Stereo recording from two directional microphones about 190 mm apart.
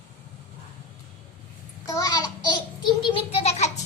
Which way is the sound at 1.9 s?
20° left (ahead or behind).